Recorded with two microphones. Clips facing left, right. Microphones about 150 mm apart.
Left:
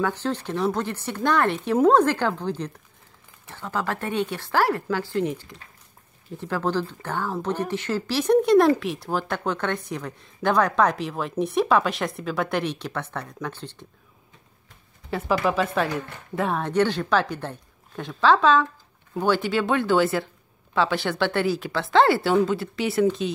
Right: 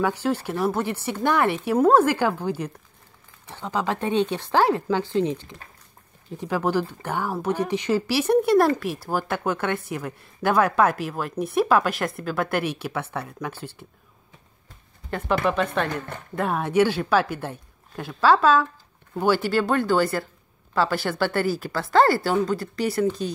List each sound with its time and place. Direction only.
0.0 s a woman's voice: 10° right (ahead or behind)
15.0 s speech: centre (ahead or behind)